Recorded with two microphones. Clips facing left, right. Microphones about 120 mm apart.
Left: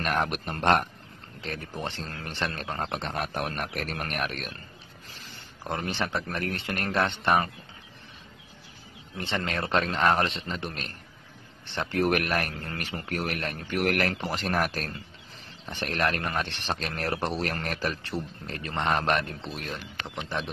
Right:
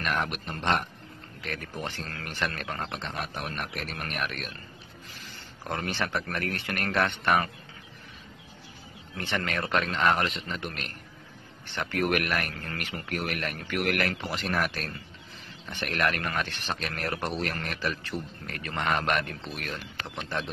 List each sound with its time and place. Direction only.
0.0 s a man's voice: 40° left (ahead or behind)
1.4 s a man's voice: 30° left (ahead or behind)
5.6 s a man's voice: 20° left (ahead or behind)
9.1 s a man's voice: 25° left (ahead or behind)